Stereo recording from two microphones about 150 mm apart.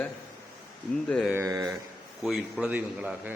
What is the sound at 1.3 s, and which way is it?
Speech, 20° right (ahead or behind).